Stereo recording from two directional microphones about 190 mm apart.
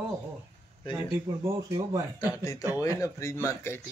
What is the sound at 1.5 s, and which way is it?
Speech, 15° right (ahead or behind).